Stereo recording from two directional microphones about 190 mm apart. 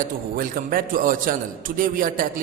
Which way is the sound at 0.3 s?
45° right (ahead or behind).